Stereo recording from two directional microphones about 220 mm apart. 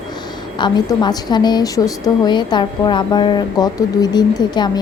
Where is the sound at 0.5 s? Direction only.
20° left (ahead or behind).